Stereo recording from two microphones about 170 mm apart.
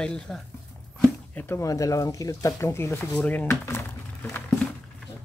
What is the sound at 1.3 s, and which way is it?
Speech, 15° left (ahead or behind).